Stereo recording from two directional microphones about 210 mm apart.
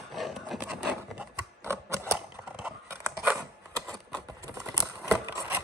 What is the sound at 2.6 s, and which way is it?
Scissors, 10° right (ahead or behind).